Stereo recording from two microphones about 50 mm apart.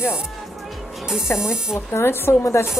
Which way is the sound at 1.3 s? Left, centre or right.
Left.